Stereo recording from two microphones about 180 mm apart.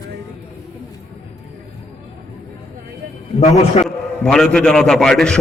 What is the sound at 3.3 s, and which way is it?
Speech, 35° left (ahead or behind).